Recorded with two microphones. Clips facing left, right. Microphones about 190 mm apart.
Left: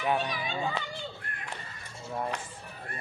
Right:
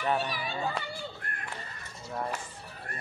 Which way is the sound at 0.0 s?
5° left (ahead or behind).